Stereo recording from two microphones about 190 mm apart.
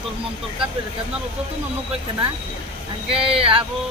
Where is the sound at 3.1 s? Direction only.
30° right (ahead or behind).